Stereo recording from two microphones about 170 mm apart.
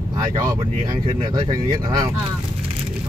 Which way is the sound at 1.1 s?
25° right (ahead or behind).